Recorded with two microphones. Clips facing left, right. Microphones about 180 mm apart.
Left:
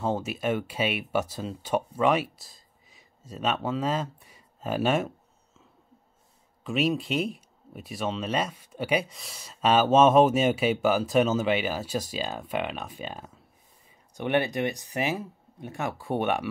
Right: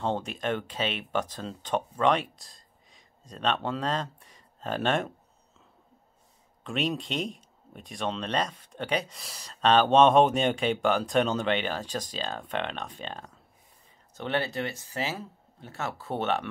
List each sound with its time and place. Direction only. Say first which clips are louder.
0.0 s speech: left 2 dB; 5° left (ahead or behind)
6.6 s speech: left 4 dB; 5° left (ahead or behind)